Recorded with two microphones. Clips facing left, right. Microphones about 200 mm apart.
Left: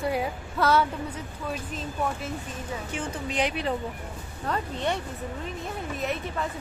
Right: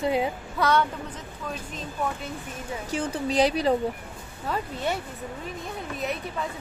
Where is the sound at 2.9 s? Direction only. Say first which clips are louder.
Right 7 dB; 35° right (ahead or behind).